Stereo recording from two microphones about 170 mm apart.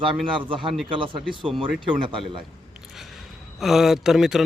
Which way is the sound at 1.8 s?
30° right (ahead or behind).